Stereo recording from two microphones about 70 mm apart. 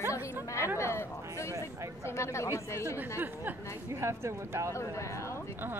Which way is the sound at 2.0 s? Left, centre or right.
Left.